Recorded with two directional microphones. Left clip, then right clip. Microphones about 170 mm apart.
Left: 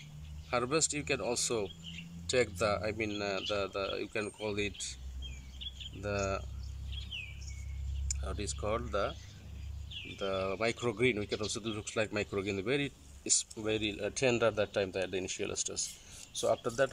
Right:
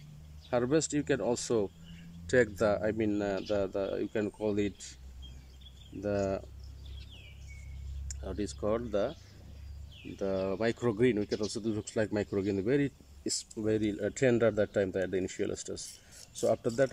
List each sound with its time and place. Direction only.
0.5 s speech: 40° right (ahead or behind)
5.9 s speech: 40° right (ahead or behind)
8.2 s speech: 35° right (ahead or behind)
10.1 s speech: 35° right (ahead or behind)